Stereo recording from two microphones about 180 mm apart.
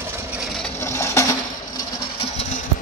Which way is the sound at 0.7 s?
15° left (ahead or behind).